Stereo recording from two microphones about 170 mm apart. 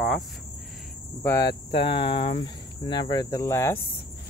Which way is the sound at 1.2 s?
15° left (ahead or behind).